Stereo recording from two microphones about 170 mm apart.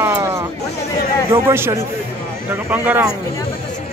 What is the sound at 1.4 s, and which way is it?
Speech, 15° right (ahead or behind).